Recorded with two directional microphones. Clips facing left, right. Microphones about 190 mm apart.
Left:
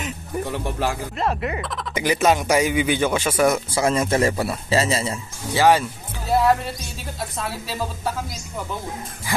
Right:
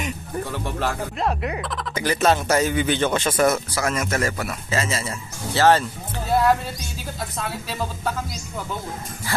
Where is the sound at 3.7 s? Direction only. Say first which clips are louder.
Left 4 dB; 30° left (ahead or behind).